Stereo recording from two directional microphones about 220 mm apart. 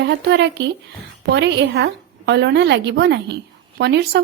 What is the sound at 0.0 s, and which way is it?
A woman's voice, 50° right (ahead or behind).